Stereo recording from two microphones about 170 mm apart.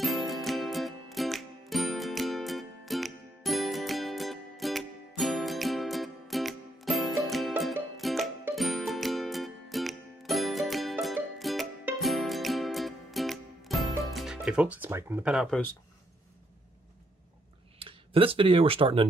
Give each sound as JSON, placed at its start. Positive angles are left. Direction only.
{"t": 0.0, "sound": "music", "side_deg": 0}
{"t": 17.7, "sound": "speech", "side_deg": -30}